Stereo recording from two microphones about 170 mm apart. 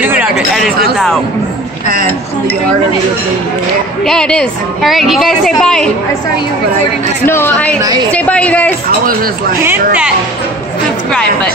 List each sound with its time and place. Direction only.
0.0 s chatter: 10° right (ahead or behind)
4.0 s a woman's voice: 5° left (ahead or behind)
7.2 s a man's voice: 10° left (ahead or behind)
7.8 s a woman's voice: 25° right (ahead or behind)
8.1 s a man's voice: 5° left (ahead or behind)
9.0 s speech: 60° right (ahead or behind)
9.6 s speech: 10° right (ahead or behind)